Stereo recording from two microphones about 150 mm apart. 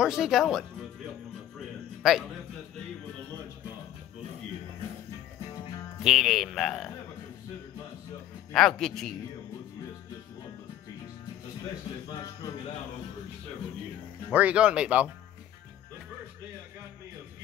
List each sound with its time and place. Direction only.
0.0 s a man's voice: 5° right (ahead or behind)
6.0 s a man's voice: centre (ahead or behind)
8.5 s a man's voice: 5° left (ahead or behind)
14.3 s speech: 10° right (ahead or behind)